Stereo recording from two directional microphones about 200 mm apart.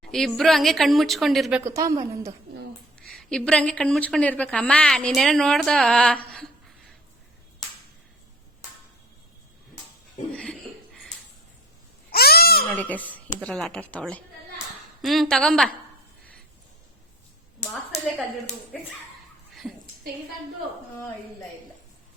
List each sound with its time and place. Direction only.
0.0 s a woman's voice: centre (ahead or behind)
1.6 s a woman's voice: 15° right (ahead or behind)
3.0 s a woman's voice: 5° left (ahead or behind)
10.3 s a sound: 5° left (ahead or behind)
12.1 s a sound: 50° left (ahead or behind)
12.6 s a woman's voice: 10° left (ahead or behind)
19.6 s a woman's voice: centre (ahead or behind)